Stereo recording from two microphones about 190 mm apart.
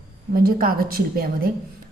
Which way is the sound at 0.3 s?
50° right (ahead or behind).